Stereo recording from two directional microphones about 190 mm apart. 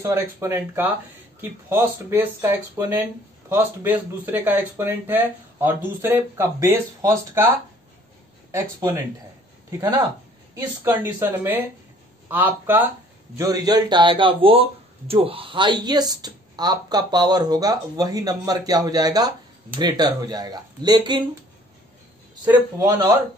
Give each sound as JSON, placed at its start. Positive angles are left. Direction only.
{"t": 0.0, "sound": "speech", "side_deg": -15}
{"t": 22.4, "sound": "speech", "side_deg": -20}